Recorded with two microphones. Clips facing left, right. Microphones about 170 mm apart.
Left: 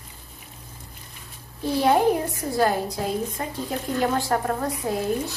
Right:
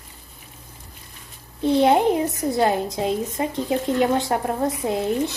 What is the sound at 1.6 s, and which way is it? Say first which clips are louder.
A woman's voice: right 3 dB; 20° right (ahead or behind).